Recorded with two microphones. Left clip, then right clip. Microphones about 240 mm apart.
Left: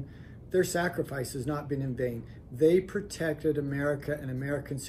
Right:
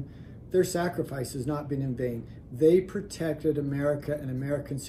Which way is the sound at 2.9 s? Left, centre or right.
Centre.